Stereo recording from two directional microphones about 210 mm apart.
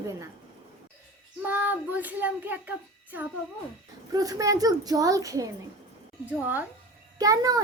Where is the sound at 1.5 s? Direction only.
10° right (ahead or behind).